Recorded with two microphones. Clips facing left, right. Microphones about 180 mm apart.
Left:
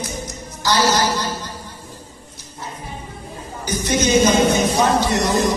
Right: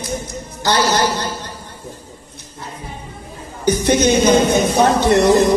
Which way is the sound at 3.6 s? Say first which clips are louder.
Right 6 dB; 60° right (ahead or behind).